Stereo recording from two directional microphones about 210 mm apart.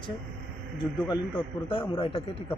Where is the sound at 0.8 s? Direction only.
20° left (ahead or behind).